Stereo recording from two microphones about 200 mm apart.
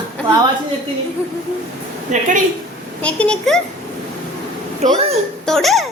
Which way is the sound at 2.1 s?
35° right (ahead or behind).